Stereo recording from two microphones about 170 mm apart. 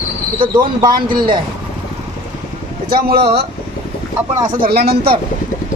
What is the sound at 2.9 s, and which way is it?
Speech, 60° right (ahead or behind).